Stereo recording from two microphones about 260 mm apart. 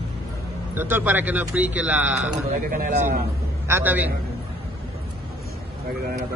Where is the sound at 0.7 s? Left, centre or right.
Centre.